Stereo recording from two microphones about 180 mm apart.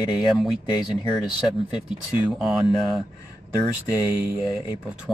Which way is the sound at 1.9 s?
5° right (ahead or behind).